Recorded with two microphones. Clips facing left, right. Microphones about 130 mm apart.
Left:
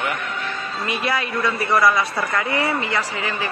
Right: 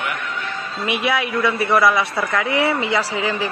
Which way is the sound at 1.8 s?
Centre (ahead or behind).